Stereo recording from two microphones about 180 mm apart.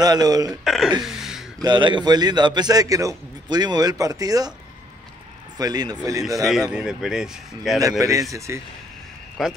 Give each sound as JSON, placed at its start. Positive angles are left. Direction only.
{"t": 0.0, "sound": "a man's voice", "side_deg": -20}
{"t": 0.7, "sound": "speech", "side_deg": 0}
{"t": 1.0, "sound": "a sound", "side_deg": 0}
{"t": 1.6, "sound": "a man's voice", "side_deg": -25}
{"t": 5.6, "sound": "a man's voice", "side_deg": -20}
{"t": 6.7, "sound": "speech", "side_deg": -5}
{"t": 8.0, "sound": "speech", "side_deg": -20}
{"t": 9.4, "sound": "speech", "side_deg": 0}